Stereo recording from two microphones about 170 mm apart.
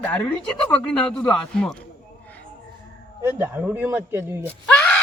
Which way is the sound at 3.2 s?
10° right (ahead or behind).